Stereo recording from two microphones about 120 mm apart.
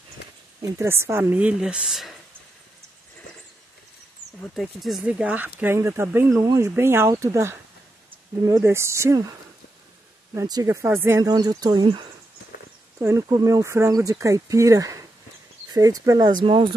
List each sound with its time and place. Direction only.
0.6 s speech: 25° right (ahead or behind); by 2.1 s centre (ahead or behind)
4.6 s speech: centre (ahead or behind)
5.0 s speech: 10° right (ahead or behind)
10.4 s speech: 30° right (ahead or behind)
13.0 s speech: 25° right (ahead or behind)